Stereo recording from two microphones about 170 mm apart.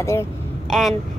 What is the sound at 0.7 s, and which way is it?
Speech, centre (ahead or behind).